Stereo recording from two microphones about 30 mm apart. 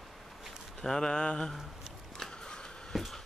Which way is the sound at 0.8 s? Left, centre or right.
Centre.